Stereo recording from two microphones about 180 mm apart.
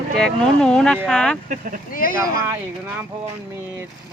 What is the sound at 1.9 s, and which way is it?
Speech, 50° left (ahead or behind).